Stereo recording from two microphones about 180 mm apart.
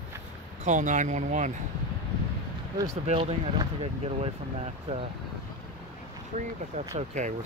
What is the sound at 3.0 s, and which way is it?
Speech, 40° right (ahead or behind).